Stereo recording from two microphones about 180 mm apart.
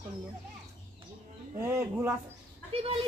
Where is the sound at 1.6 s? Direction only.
15° right (ahead or behind).